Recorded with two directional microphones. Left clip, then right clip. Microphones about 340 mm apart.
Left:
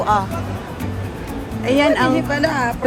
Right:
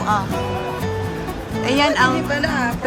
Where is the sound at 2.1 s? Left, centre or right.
Centre.